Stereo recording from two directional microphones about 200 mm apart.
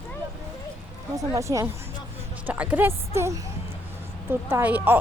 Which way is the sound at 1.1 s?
15° right (ahead or behind).